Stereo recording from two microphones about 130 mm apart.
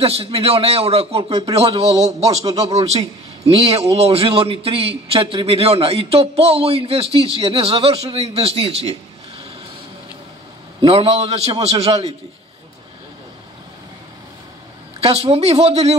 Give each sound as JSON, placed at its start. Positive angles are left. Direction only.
{"t": 0.0, "sound": "a man's voice", "side_deg": -50}
{"t": 10.8, "sound": "a man's voice", "side_deg": -50}
{"t": 15.0, "sound": "a man's voice", "side_deg": -50}